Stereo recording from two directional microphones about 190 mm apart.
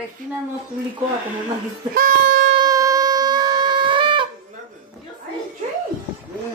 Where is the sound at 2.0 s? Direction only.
50° right (ahead or behind).